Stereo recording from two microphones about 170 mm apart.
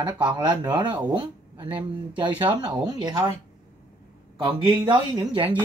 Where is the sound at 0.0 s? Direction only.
30° right (ahead or behind).